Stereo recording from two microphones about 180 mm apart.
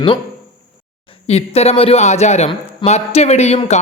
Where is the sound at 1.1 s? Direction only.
35° left (ahead or behind).